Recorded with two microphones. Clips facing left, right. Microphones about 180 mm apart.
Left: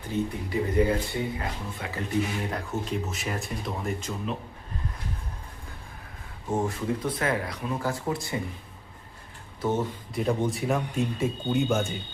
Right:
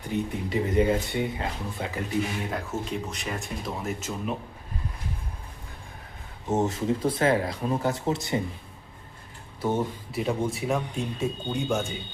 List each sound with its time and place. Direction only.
0.1 s speech: 20° right (ahead or behind)
2.0 s speech: centre (ahead or behind)
6.5 s speech: 25° right (ahead or behind)
9.6 s speech: 10° right (ahead or behind)